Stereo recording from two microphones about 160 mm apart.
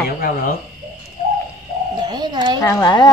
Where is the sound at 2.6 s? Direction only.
25° left (ahead or behind).